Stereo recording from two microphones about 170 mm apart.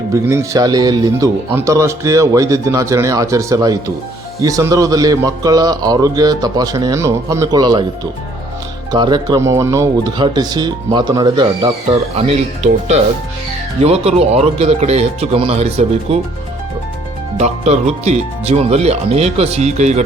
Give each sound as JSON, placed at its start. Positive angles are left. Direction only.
{"t": 0.1, "sound": "speech", "side_deg": -15}
{"t": 8.9, "sound": "speech", "side_deg": -25}
{"t": 17.3, "sound": "speech", "side_deg": -40}